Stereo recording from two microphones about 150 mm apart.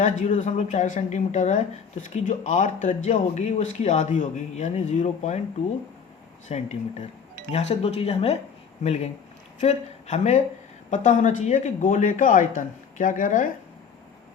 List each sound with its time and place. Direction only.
0.0 s a woman's voice: 55° left (ahead or behind)
6.5 s a woman's voice: 50° left (ahead or behind)